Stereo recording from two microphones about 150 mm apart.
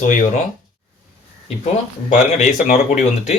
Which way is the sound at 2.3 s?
50° left (ahead or behind).